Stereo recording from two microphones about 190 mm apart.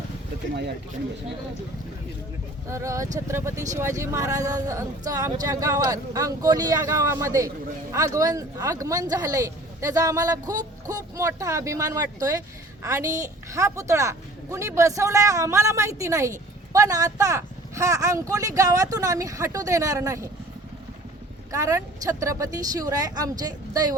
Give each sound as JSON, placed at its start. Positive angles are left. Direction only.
{"t": 0.5, "sound": "speech", "side_deg": -60}
{"t": 2.6, "sound": "a woman's voice", "side_deg": -15}
{"t": 21.5, "sound": "a woman's voice", "side_deg": -15}